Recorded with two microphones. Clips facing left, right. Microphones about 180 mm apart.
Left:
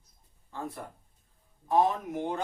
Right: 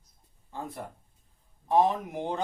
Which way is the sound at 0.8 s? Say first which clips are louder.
Right 3 dB; 20° right (ahead or behind).